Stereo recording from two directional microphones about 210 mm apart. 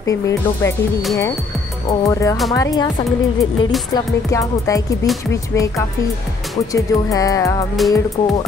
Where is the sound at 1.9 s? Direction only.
15° left (ahead or behind).